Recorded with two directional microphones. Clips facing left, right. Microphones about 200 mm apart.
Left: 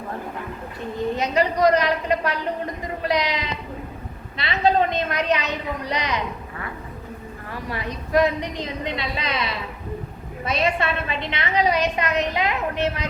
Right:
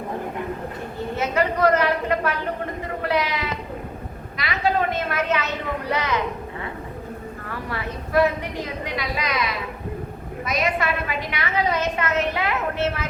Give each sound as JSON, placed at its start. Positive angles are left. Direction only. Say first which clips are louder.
{"t": 1.1, "sound": "a sound", "louder": "right 1 dB", "side_deg": 15}
{"t": 3.1, "sound": "a man's voice", "louder": "left 1 dB", "side_deg": 15}
{"t": 7.5, "sound": "a woman's voice", "louder": "left 1 dB", "side_deg": 15}